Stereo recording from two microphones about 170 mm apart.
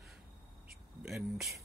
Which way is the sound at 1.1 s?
Centre (ahead or behind).